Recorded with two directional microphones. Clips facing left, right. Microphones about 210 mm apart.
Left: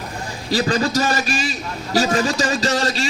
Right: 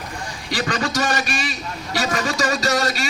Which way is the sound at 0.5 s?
30° left (ahead or behind).